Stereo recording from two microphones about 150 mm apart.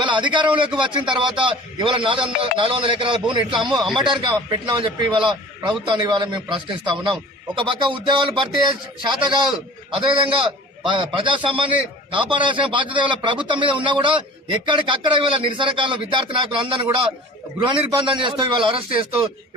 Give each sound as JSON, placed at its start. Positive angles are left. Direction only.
{"t": 0.0, "sound": "a man's voice", "side_deg": -30}